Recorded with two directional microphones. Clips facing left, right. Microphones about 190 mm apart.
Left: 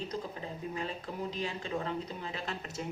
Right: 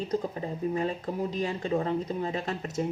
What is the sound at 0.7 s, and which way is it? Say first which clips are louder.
Speech: right 8 dB; 45° right (ahead or behind).